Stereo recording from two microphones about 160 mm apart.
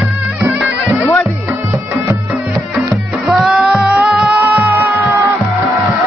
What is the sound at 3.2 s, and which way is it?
Music, 5° right (ahead or behind).